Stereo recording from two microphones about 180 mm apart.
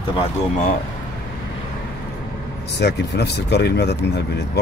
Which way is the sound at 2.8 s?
70° left (ahead or behind).